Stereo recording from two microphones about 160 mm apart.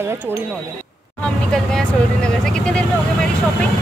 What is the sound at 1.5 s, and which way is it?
Vehicle, 5° left (ahead or behind).